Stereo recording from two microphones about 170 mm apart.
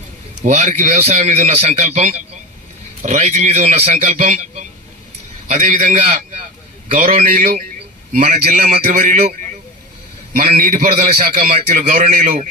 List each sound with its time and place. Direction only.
0.4 s a man's voice: 45° right (ahead or behind)
5.5 s a man's voice: 55° right (ahead or behind)
10.3 s a man's voice: 55° right (ahead or behind)